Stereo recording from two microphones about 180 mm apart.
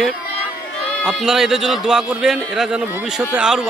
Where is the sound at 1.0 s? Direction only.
Centre (ahead or behind).